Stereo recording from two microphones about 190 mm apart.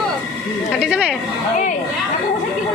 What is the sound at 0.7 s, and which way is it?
Speech, centre (ahead or behind).